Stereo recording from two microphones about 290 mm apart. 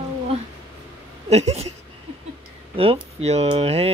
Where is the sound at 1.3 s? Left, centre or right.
Right.